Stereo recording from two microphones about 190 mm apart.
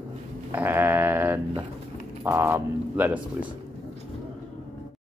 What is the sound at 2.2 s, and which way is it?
Speech, 10° right (ahead or behind).